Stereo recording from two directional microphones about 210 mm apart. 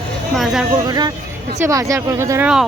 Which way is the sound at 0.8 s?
20° right (ahead or behind).